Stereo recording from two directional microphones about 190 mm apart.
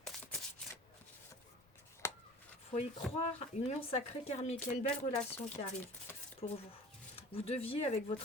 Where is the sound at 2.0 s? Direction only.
15° left (ahead or behind).